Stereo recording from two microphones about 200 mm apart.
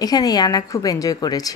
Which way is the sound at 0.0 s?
20° left (ahead or behind).